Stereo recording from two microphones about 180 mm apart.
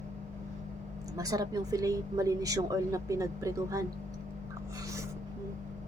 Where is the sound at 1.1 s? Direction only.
20° right (ahead or behind).